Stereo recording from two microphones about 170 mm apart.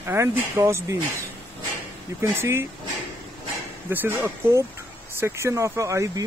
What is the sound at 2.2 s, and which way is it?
Speech, 15° right (ahead or behind).